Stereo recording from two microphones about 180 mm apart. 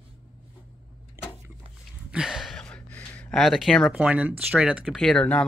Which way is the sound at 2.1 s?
5° right (ahead or behind).